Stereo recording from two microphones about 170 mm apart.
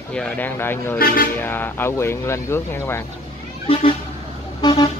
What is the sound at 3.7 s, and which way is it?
Vehicle, 35° left (ahead or behind).